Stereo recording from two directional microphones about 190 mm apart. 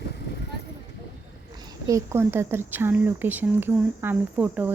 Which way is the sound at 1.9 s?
15° right (ahead or behind).